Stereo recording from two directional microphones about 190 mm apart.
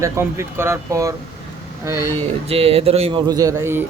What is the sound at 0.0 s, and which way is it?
A man's voice, 15° right (ahead or behind).